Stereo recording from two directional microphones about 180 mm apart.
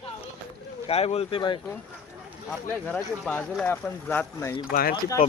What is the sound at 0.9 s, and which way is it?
Speech, 35° left (ahead or behind).